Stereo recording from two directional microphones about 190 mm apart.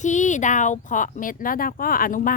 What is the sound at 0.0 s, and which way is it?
Speech, 40° left (ahead or behind).